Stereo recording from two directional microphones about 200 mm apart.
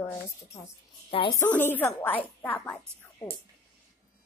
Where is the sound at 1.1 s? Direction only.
25° left (ahead or behind).